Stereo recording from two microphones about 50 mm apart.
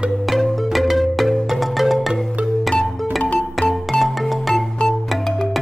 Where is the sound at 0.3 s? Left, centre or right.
Centre.